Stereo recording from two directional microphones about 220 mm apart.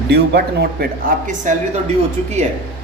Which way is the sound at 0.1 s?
45° right (ahead or behind).